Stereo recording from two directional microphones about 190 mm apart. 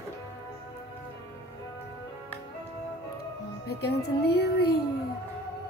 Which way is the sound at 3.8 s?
60° left (ahead or behind).